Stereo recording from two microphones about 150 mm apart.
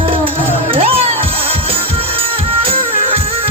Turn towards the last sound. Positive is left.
turn(degrees=-40)  # may be behind; listen again after turning